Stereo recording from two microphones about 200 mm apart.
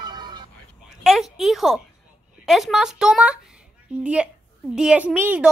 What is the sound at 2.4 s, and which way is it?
A woman's voice, centre (ahead or behind).